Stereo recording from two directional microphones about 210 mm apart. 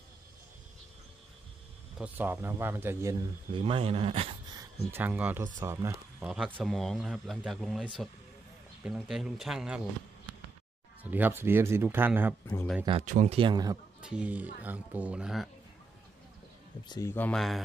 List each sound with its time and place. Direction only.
2.0 s speech: 10° right (ahead or behind); by 4.6 s 25° right (ahead or behind)
4.9 s speech: 10° right (ahead or behind)
11.0 s speech: 10° right (ahead or behind)
13.0 s speech: 35° right (ahead or behind); by 13.7 s 20° right (ahead or behind)
14.0 s speech: 5° right (ahead or behind)
16.9 s speech: 10° left (ahead or behind)